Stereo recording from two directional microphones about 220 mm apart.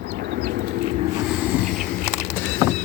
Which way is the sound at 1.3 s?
Centre (ahead or behind).